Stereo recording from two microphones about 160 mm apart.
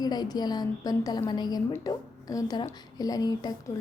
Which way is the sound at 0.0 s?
25° left (ahead or behind).